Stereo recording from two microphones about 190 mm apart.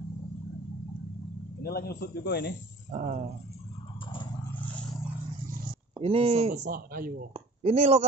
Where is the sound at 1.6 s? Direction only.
55° left (ahead or behind).